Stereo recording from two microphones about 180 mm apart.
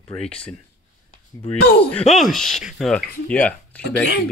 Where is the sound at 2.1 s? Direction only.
Centre (ahead or behind).